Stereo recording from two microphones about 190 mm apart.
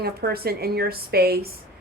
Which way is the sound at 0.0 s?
55° right (ahead or behind).